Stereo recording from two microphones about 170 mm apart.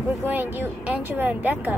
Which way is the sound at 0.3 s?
10° right (ahead or behind).